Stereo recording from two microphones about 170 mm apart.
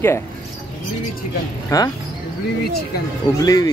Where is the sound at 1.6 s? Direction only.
20° left (ahead or behind).